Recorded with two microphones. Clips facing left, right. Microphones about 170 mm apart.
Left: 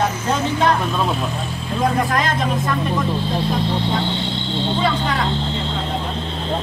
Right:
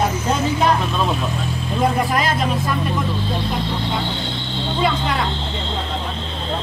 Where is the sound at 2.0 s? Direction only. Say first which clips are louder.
Even; 10° right (ahead or behind).